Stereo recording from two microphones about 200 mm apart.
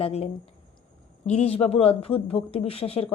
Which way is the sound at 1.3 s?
30° left (ahead or behind).